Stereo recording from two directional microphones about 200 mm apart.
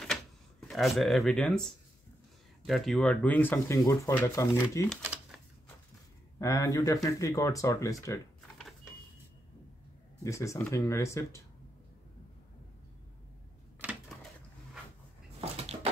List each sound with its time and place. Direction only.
0.0 s cash register: centre (ahead or behind)
2.6 s speech: centre (ahead or behind)
5.0 s typewriter: 5° right (ahead or behind)
6.4 s speech: 15° left (ahead or behind)
8.4 s vehicle: 5° left (ahead or behind)
10.2 s speech: 15° left (ahead or behind)
13.7 s typewriter: 5° right (ahead or behind)
15.6 s a sound: 30° right (ahead or behind)